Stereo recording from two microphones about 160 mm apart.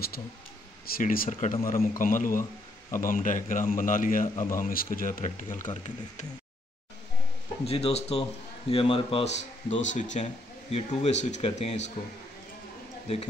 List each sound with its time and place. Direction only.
0.8 s speech: 65° left (ahead or behind)
7.6 s a man's voice: 40° left (ahead or behind)
9.7 s speech: 50° left (ahead or behind)